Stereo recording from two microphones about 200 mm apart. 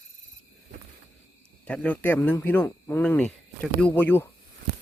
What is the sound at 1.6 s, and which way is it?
Speech, 5° left (ahead or behind).